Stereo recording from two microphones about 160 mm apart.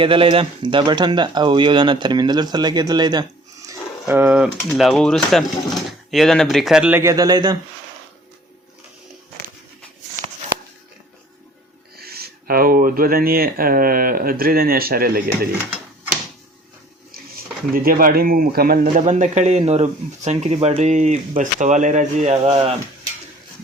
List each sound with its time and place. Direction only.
0.0 s speech: 35° right (ahead or behind)
3.7 s a sound: 15° right (ahead or behind)
4.7 s speech: centre (ahead or behind)
7.0 s speech: 20° right (ahead or behind)
11.9 s speech: 75° right (ahead or behind)
17.1 s a sound: 70° right (ahead or behind)
17.8 s speech: 65° right (ahead or behind)
19.0 s speech: 45° right (ahead or behind)